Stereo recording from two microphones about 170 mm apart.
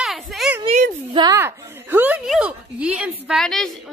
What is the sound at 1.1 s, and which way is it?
A woman's voice, 20° right (ahead or behind).